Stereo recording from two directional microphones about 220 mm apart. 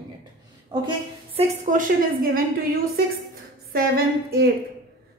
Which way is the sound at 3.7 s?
45° right (ahead or behind).